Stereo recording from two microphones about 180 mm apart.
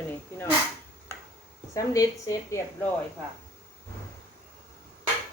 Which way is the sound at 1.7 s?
20° left (ahead or behind).